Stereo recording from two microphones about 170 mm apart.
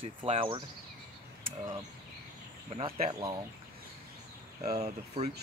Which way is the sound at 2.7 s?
35° right (ahead or behind).